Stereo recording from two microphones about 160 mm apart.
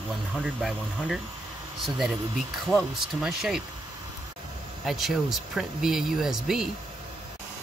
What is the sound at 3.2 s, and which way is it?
Speech, centre (ahead or behind).